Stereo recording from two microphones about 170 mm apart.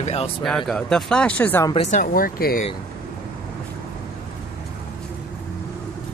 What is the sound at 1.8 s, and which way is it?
Speech, 45° left (ahead or behind).